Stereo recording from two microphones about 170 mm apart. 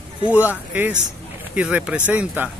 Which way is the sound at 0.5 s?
10° right (ahead or behind).